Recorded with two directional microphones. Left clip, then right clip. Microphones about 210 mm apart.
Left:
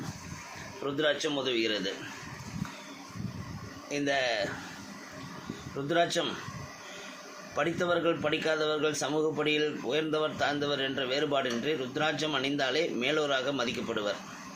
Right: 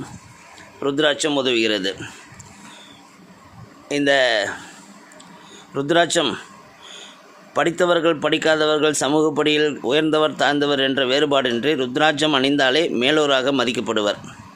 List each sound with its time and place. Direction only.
0.9 s speech: 55° right (ahead or behind)
3.8 s speech: 55° right (ahead or behind)
5.7 s speech: 55° right (ahead or behind)
7.5 s speech: 55° right (ahead or behind)